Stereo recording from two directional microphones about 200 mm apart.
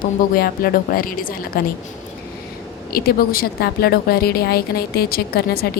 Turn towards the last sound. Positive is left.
turn(degrees=50)  # may be behind; listen again after turning